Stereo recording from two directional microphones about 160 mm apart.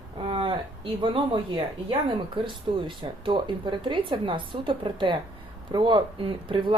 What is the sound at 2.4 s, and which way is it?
Speech, 30° right (ahead or behind).